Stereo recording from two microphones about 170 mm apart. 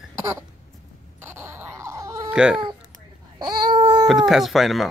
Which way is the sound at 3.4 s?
20° right (ahead or behind).